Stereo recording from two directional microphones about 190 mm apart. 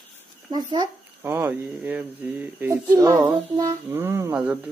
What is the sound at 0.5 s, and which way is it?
Speech, 20° right (ahead or behind).